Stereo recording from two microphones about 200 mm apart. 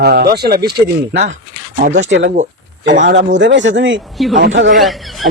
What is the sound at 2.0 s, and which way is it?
Speech, 65° right (ahead or behind).